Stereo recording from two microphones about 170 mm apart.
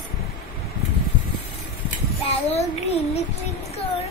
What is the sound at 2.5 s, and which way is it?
Child singing, 40° left (ahead or behind).